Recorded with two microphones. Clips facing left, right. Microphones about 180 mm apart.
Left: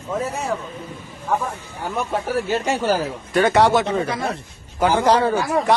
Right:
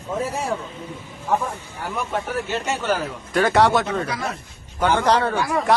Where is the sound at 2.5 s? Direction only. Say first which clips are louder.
Left 5 dB; 40° left (ahead or behind).